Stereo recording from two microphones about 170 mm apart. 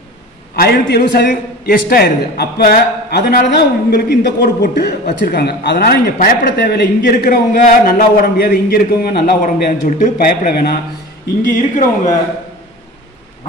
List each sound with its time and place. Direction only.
0.6 s a man's voice: 70° left (ahead or behind)
11.4 s speech: 50° left (ahead or behind)